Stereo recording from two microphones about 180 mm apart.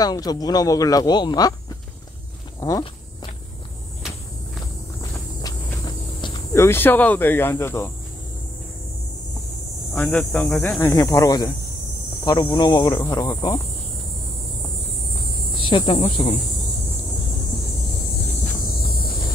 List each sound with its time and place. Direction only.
0.0 s speech: 20° left (ahead or behind)
2.6 s speech: 20° left (ahead or behind)
5.4 s cricket: 20° left (ahead or behind)
9.9 s speech: 5° left (ahead or behind)
15.6 s speech: 25° left (ahead or behind)
18.8 s a sound: 60° left (ahead or behind)